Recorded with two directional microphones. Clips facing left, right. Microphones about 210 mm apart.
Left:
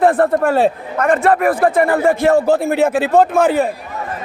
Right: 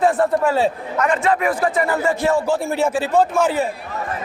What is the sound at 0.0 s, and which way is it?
A man's voice, 55° left (ahead or behind).